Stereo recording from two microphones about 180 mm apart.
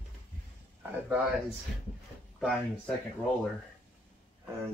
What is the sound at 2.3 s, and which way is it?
Speech, centre (ahead or behind).